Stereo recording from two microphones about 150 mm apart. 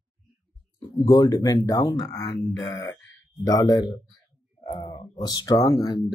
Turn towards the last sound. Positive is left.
turn(degrees=25)  # may be behind; listen again after turning